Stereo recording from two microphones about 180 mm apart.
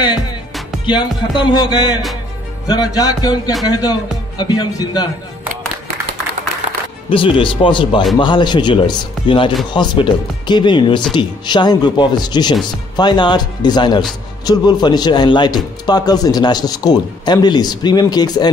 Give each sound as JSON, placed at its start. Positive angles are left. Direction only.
{"t": 1.4, "sound": "a man's voice", "side_deg": 25}
{"t": 6.6, "sound": "music", "side_deg": -40}
{"t": 7.1, "sound": "a man's voice", "side_deg": 30}